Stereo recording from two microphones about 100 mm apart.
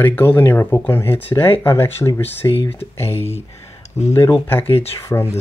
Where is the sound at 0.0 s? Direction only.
15° left (ahead or behind).